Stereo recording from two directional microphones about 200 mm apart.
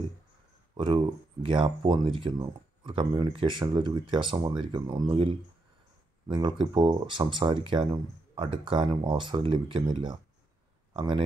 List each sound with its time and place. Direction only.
0.7 s speech: 25° right (ahead or behind)